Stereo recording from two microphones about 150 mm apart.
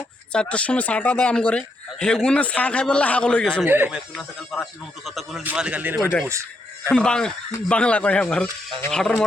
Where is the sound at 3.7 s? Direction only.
10° right (ahead or behind).